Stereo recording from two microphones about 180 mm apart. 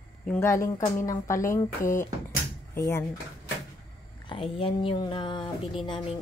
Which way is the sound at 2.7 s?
15° left (ahead or behind).